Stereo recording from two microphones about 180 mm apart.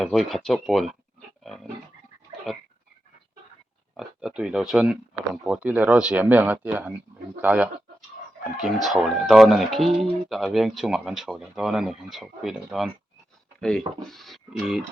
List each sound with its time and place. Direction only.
0.0 s speech: centre (ahead or behind)
1.5 s pig: centre (ahead or behind)
3.9 s speech: 5° right (ahead or behind)